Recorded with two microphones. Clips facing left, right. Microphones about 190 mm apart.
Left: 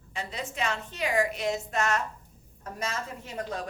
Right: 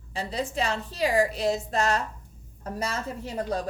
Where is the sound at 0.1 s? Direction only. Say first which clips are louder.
Right 6 dB; 35° right (ahead or behind).